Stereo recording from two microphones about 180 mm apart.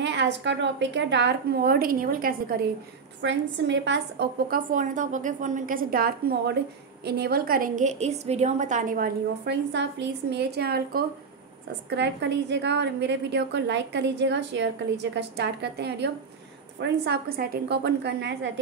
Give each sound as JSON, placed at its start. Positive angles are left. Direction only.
{"t": 0.0, "sound": "a woman's voice", "side_deg": -75}
{"t": 3.2, "sound": "a woman's voice", "side_deg": -80}
{"t": 4.5, "sound": "a woman's voice", "side_deg": -50}
{"t": 11.9, "sound": "a woman's voice", "side_deg": -75}